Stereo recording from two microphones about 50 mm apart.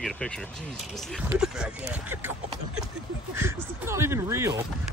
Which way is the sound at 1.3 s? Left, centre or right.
Centre.